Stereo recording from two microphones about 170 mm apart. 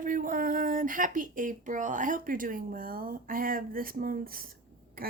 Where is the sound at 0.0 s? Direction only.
50° right (ahead or behind).